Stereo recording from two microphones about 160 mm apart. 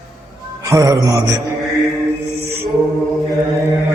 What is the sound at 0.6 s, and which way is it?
Speech, 20° right (ahead or behind).